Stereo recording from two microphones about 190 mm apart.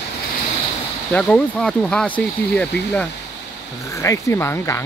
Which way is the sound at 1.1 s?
5° left (ahead or behind).